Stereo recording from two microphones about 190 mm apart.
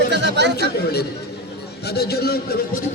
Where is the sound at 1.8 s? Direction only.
55° left (ahead or behind).